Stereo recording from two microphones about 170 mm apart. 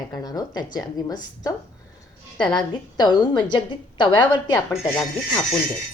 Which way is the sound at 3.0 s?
25° left (ahead or behind).